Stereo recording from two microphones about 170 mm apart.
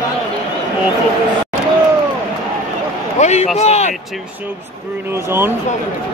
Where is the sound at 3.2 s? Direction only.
40° left (ahead or behind).